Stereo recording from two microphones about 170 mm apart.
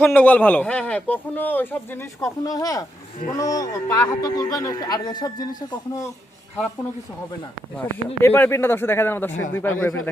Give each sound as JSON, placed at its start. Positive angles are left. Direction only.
{"t": 0.0, "sound": "a man's voice", "side_deg": 10}
{"t": 7.8, "sound": "a man's voice", "side_deg": 10}